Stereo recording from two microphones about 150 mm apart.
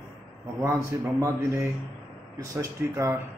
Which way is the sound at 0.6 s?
20° right (ahead or behind).